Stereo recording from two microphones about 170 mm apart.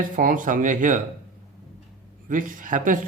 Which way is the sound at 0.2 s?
55° right (ahead or behind).